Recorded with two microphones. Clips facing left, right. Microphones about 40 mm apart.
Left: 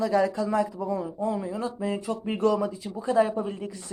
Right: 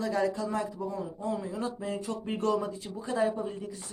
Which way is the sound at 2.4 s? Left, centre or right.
Left.